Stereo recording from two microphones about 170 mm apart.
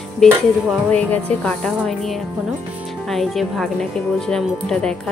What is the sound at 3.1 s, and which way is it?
Speech, centre (ahead or behind).